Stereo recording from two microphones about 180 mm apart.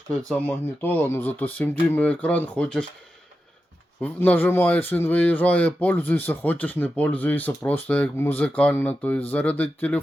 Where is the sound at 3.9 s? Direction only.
10° left (ahead or behind).